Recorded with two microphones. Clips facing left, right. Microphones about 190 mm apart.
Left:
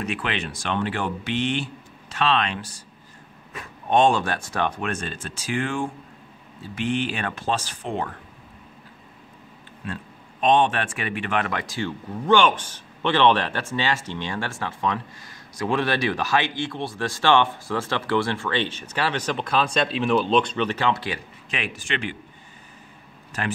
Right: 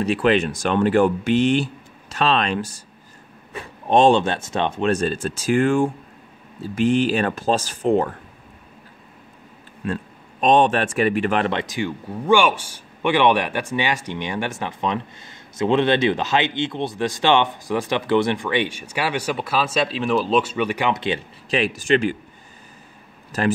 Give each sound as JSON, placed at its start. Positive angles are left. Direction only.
{"t": 0.0, "sound": "speech", "side_deg": -35}
{"t": 3.5, "sound": "speech", "side_deg": -30}
{"t": 4.9, "sound": "speech", "side_deg": -40}
{"t": 10.4, "sound": "speech", "side_deg": -40}
{"t": 21.5, "sound": "speech", "side_deg": -35}